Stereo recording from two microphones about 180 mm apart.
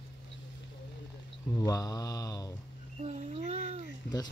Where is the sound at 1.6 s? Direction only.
20° left (ahead or behind).